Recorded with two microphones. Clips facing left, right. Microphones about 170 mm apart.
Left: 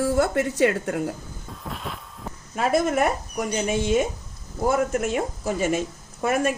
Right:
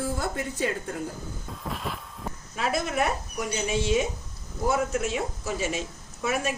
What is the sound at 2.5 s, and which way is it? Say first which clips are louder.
Speech: left 7 dB; 50° left (ahead or behind).